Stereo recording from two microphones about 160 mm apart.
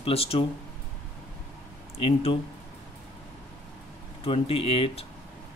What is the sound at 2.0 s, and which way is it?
Speech, 35° left (ahead or behind).